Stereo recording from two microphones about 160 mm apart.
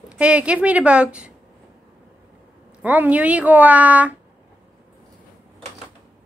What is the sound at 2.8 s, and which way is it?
A woman's voice, 10° right (ahead or behind).